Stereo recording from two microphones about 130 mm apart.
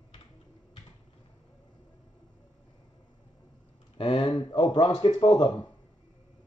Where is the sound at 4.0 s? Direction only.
40° left (ahead or behind).